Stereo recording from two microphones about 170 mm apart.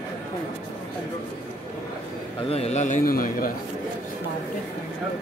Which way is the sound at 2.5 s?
40° left (ahead or behind).